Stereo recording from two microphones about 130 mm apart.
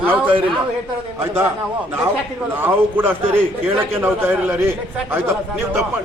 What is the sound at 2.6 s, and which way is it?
A man's voice, 15° right (ahead or behind).